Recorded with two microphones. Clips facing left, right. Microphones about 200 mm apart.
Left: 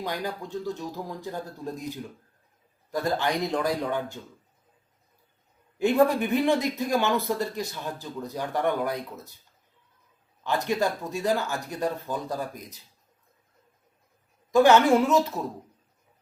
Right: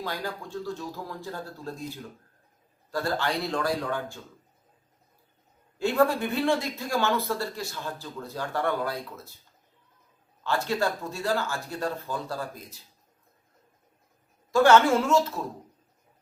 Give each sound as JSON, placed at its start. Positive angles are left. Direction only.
{"t": 0.0, "sound": "speech", "side_deg": 20}
{"t": 5.8, "sound": "speech", "side_deg": 20}
{"t": 10.4, "sound": "speech", "side_deg": 15}
{"t": 14.5, "sound": "speech", "side_deg": 15}